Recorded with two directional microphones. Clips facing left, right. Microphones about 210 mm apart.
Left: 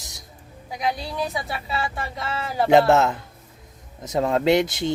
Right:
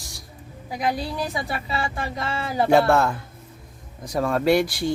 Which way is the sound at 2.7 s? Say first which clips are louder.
Left 2 dB; 20° left (ahead or behind).